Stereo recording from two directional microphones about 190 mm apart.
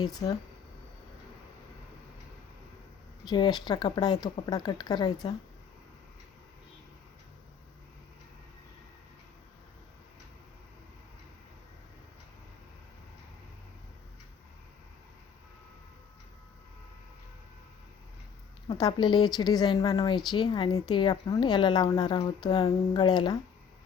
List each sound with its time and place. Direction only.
0.0 s a woman's voice: 20° left (ahead or behind)
3.2 s a woman's voice: 20° left (ahead or behind)
18.7 s a woman's voice: 20° left (ahead or behind)